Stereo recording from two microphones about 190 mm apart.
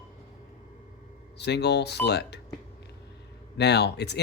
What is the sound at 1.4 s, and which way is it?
Speech, 60° left (ahead or behind).